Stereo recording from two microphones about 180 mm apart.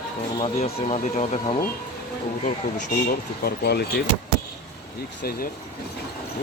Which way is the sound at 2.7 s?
55° left (ahead or behind).